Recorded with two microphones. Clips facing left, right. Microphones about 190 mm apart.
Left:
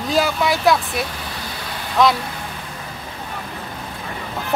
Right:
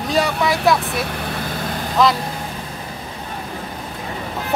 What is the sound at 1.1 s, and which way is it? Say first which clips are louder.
Vehicle: right 6 dB; 55° right (ahead or behind).